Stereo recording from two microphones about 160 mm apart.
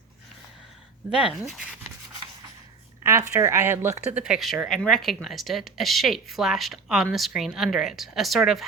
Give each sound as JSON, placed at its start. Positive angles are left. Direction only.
{"t": 1.1, "sound": "speech", "side_deg": -5}
{"t": 3.0, "sound": "a woman's voice", "side_deg": -15}
{"t": 4.2, "sound": "speech", "side_deg": -5}